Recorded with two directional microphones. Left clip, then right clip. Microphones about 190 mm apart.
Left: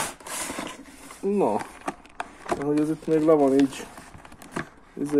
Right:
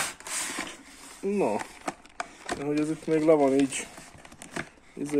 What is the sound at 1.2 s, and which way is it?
Speech, 15° right (ahead or behind).